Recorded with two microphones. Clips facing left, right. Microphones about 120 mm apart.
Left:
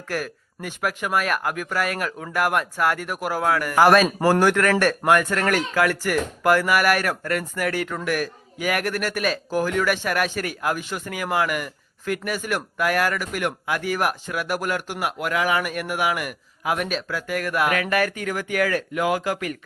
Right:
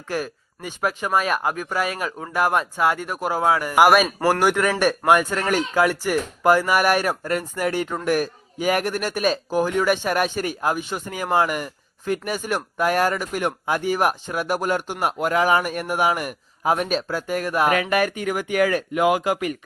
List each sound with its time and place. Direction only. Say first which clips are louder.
1.3 s speech: right 2 dB; centre (ahead or behind); by 19.5 s 20° right (ahead or behind)